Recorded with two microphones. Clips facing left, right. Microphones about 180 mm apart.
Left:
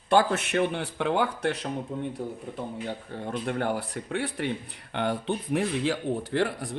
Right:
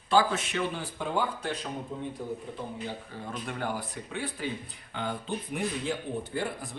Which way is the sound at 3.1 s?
60° left (ahead or behind).